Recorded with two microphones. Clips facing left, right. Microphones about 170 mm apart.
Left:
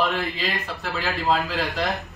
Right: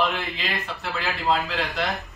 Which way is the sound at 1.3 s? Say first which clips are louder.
Left 1 dB; centre (ahead or behind).